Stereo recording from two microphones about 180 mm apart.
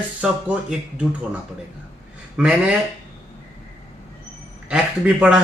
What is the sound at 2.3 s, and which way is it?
Speech, 5° right (ahead or behind).